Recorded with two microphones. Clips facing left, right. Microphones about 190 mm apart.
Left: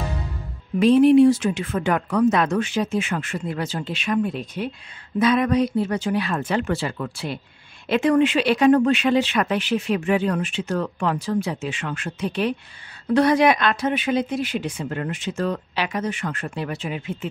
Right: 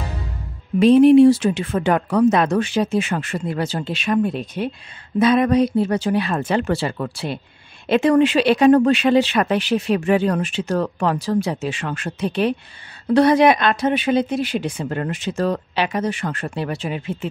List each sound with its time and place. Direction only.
0.7 s speech: 20° right (ahead or behind); by 15.6 s 40° right (ahead or behind)
15.7 s speech: 30° right (ahead or behind)